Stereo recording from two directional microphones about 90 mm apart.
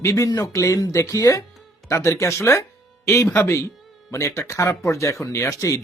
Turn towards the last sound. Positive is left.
turn(degrees=35)  # may be behind; listen again after turning